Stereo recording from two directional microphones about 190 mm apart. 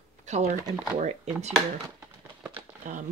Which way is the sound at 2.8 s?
45° right (ahead or behind).